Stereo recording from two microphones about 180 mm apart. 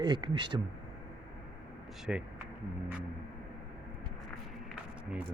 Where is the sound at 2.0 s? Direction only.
5° right (ahead or behind).